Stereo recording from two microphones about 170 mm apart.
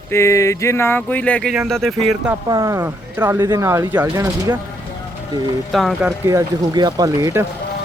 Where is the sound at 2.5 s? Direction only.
20° right (ahead or behind).